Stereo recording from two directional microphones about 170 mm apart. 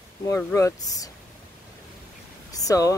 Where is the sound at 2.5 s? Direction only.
20° left (ahead or behind).